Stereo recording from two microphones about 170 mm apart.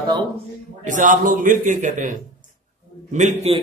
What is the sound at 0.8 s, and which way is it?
A man's voice, 50° right (ahead or behind).